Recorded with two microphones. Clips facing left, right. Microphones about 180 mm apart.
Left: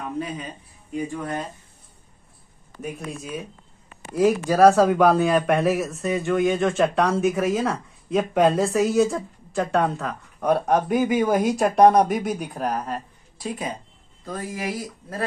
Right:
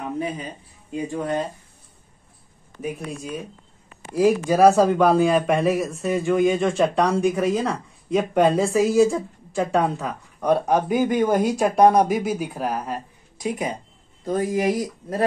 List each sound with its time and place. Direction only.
1.1 s speech: 25° right (ahead or behind)
2.8 s a man's voice: centre (ahead or behind); by 15.2 s 20° right (ahead or behind)